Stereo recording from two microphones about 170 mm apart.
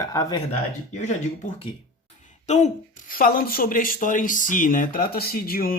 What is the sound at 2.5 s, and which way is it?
Speech, 45° left (ahead or behind).